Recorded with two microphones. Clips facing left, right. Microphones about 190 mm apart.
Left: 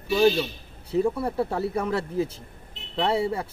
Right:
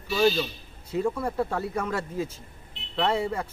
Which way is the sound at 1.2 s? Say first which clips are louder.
Left 2 dB; 30° left (ahead or behind).